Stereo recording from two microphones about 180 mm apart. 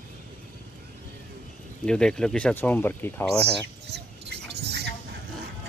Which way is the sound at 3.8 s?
70° right (ahead or behind).